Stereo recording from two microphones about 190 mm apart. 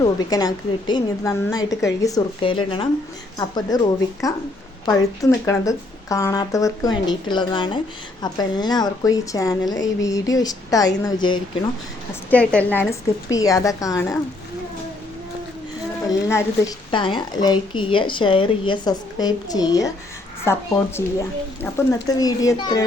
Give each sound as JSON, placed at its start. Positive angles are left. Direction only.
{"t": 0.0, "sound": "a woman's voice", "side_deg": 20}
{"t": 5.2, "sound": "a woman's voice", "side_deg": 15}
{"t": 12.3, "sound": "speech", "side_deg": 5}
{"t": 16.0, "sound": "a woman's voice", "side_deg": 20}